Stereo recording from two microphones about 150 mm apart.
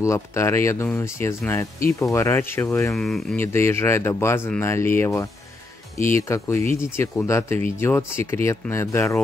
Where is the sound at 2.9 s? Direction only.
Centre (ahead or behind).